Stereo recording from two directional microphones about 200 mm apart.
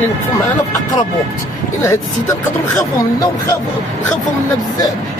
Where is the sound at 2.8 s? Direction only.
15° left (ahead or behind).